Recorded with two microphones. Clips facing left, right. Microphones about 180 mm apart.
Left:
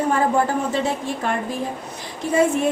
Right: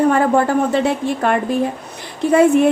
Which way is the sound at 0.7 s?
65° right (ahead or behind).